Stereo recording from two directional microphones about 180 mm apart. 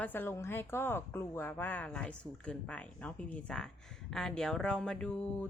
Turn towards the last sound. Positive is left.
turn(degrees=5)  # may be behind; listen again after turning